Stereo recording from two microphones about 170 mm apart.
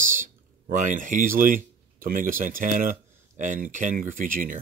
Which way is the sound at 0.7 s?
45° right (ahead or behind).